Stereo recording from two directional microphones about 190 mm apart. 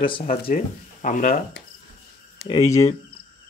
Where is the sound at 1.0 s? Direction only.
45° left (ahead or behind).